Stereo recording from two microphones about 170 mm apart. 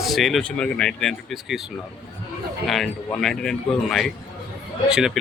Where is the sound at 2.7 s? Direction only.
Centre (ahead or behind).